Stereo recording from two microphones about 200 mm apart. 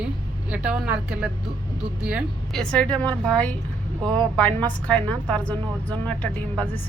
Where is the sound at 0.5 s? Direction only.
5° right (ahead or behind).